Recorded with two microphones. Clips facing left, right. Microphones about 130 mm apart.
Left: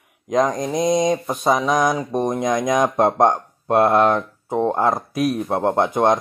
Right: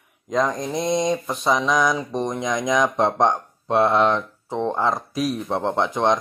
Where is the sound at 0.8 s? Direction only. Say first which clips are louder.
Left 4 dB; 45° left (ahead or behind).